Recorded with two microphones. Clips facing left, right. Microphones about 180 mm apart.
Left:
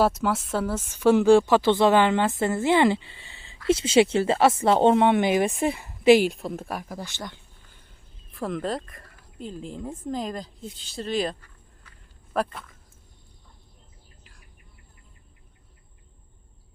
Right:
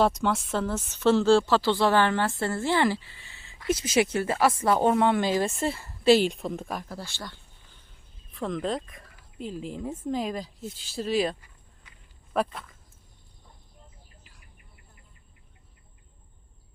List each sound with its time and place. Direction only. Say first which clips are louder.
0.0 s speech: left 1 dB; 5° left (ahead or behind)
6.2 s speech: left 1 dB; 5° left (ahead or behind)
8.4 s speech: left 1 dB; 5° left (ahead or behind)